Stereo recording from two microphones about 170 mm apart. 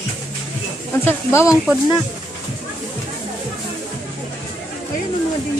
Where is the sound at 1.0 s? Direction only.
15° left (ahead or behind).